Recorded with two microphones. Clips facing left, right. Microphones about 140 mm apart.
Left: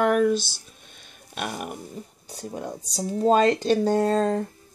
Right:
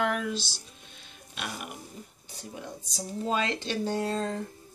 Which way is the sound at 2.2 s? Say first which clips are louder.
Left 8 dB; 40° left (ahead or behind).